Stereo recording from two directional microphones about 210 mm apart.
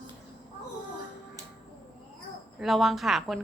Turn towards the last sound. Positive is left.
turn(degrees=0)  # may be behind; listen again after turning